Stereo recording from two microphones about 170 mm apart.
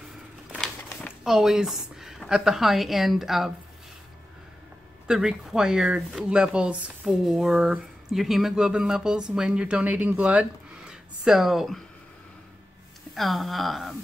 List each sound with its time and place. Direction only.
1.2 s a woman's voice: centre (ahead or behind)
5.0 s speech: 5° right (ahead or behind)
13.1 s speech: centre (ahead or behind)